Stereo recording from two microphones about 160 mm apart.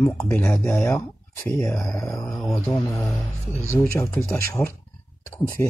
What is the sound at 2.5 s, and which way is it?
Speech, 20° left (ahead or behind).